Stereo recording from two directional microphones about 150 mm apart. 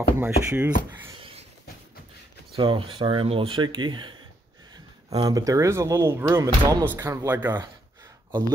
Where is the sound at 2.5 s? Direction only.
35° right (ahead or behind).